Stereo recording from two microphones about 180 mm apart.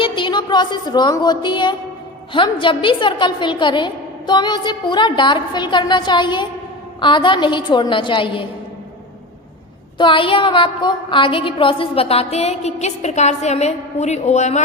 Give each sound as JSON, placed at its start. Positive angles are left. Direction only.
{"t": 0.0, "sound": "music", "side_deg": 25}
{"t": 2.3, "sound": "a woman's voice", "side_deg": 25}
{"t": 10.0, "sound": "a woman's voice", "side_deg": 30}